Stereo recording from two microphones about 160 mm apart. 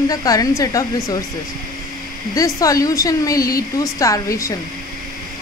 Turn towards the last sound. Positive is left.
turn(degrees=20)  # may be behind; listen again after turning